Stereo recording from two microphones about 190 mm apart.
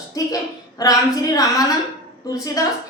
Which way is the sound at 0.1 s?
20° left (ahead or behind).